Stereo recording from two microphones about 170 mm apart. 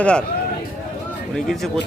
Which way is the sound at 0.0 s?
5° left (ahead or behind).